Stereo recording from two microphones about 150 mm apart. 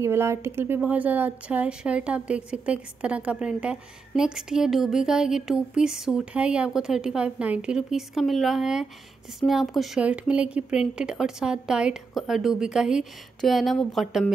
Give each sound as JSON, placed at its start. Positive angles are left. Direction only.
{"t": 0.0, "sound": "speech", "side_deg": -20}